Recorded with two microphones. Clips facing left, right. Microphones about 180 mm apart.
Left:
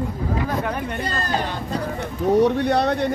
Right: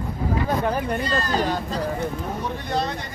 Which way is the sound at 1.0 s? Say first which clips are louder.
Right 2 dB; 55° left (ahead or behind).